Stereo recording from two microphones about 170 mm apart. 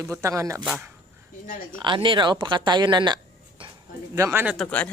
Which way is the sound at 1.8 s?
30° right (ahead or behind).